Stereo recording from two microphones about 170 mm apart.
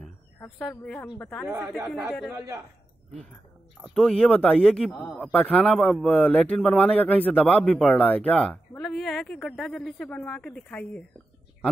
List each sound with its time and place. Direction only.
0.0 s speech: 5° left (ahead or behind)
1.5 s speech: 5° right (ahead or behind)
2.3 s a man's voice: 15° right (ahead or behind)
3.7 s a man's voice: centre (ahead or behind)